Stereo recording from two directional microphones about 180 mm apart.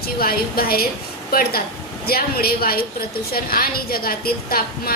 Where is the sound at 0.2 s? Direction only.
55° left (ahead or behind).